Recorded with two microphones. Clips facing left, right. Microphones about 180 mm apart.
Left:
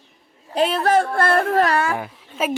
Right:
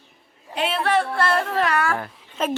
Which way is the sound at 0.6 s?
40° left (ahead or behind).